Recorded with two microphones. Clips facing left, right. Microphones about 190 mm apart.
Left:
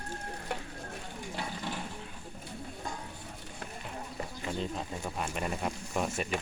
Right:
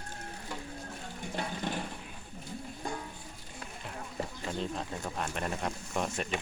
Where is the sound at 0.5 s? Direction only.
65° left (ahead or behind).